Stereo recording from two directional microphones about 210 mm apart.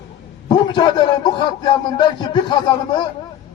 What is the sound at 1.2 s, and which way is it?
Speech, 20° left (ahead or behind).